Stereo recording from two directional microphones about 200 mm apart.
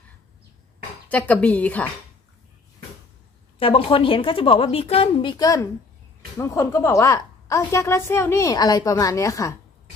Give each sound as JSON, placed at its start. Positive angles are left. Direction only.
{"t": 1.0, "sound": "a woman's voice", "side_deg": 5}
{"t": 3.5, "sound": "a woman's voice", "side_deg": 25}